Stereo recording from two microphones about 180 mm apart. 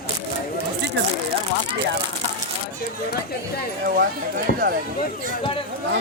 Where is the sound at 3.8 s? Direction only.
55° right (ahead or behind).